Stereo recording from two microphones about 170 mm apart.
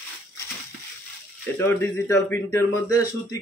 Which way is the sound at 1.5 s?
15° left (ahead or behind).